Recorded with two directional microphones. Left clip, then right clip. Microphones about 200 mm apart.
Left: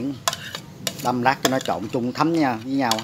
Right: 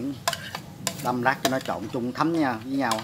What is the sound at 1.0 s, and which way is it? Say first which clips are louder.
Speech: left 4 dB; 25° left (ahead or behind).